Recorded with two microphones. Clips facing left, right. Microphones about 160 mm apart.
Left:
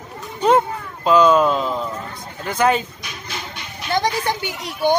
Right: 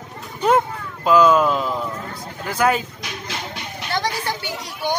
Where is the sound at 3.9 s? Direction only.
20° left (ahead or behind).